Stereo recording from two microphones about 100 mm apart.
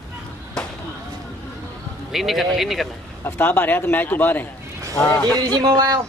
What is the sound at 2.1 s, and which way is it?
Speech, 5° right (ahead or behind).